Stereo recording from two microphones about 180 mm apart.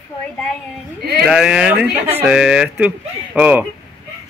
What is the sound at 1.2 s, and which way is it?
Speech, 5° right (ahead or behind).